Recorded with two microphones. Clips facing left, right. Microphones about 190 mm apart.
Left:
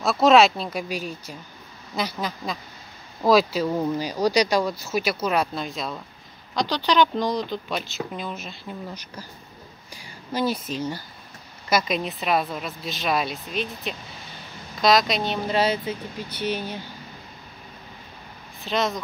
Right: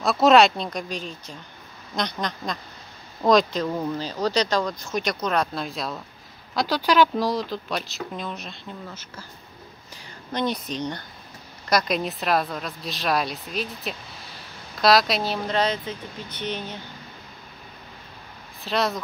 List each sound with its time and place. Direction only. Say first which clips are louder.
0.0 s a woman's voice: even; centre (ahead or behind)
10.3 s a woman's voice: left 1 dB; 5° left (ahead or behind)
18.6 s speech: even; centre (ahead or behind)